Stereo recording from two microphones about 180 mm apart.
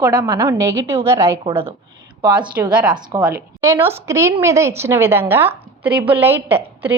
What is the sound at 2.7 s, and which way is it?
Speech, 5° right (ahead or behind).